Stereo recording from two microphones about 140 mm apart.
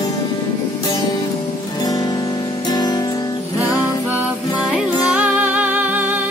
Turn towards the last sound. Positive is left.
turn(degrees=-10)  # may be behind; listen again after turning